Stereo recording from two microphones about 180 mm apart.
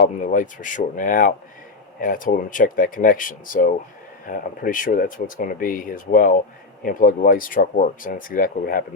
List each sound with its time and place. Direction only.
0.0 s speech: 50° left (ahead or behind)